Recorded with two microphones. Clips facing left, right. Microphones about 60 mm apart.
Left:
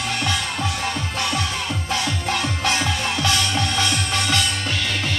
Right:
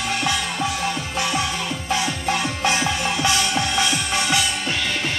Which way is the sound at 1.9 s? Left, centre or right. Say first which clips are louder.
Right 2 dB; centre.